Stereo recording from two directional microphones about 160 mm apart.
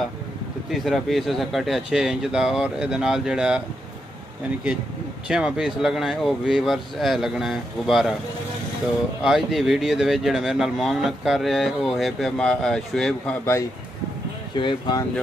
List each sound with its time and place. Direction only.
0.7 s speech: centre (ahead or behind)
5.3 s speech: 5° right (ahead or behind)
9.2 s speech: centre (ahead or behind)
14.6 s speech: 30° left (ahead or behind)